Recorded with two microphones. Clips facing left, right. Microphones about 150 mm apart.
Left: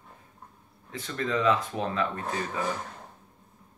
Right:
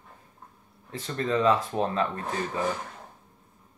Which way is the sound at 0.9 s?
30° right (ahead or behind).